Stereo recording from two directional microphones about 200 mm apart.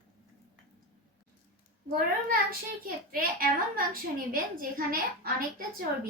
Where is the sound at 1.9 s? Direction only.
45° right (ahead or behind).